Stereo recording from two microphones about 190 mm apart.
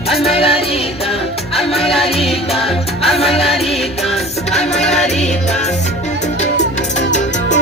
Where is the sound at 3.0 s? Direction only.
Centre (ahead or behind).